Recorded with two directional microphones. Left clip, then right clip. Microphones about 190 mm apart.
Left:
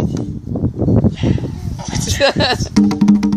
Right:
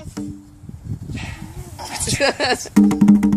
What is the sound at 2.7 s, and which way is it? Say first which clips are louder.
Music: left 1 dB; 5° right (ahead or behind).